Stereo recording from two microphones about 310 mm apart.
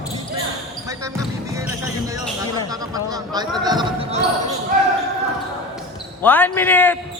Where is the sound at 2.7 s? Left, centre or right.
Centre.